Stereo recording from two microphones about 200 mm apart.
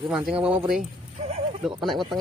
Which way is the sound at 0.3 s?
5° right (ahead or behind).